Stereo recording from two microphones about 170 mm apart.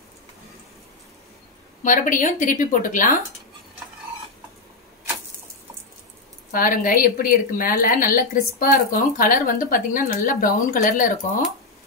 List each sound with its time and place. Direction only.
1.8 s a woman's voice: 50° left (ahead or behind)
6.5 s speech: 55° left (ahead or behind)